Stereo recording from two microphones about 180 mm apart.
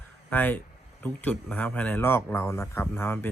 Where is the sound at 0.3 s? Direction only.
10° left (ahead or behind).